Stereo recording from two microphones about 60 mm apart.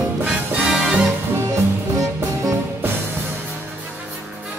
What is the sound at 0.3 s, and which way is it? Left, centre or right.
Music, centre.